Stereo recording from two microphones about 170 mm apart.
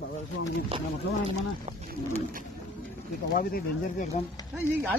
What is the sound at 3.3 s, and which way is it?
Speech, 55° left (ahead or behind).